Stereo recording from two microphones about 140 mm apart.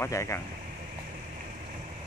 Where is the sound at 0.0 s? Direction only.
20° left (ahead or behind).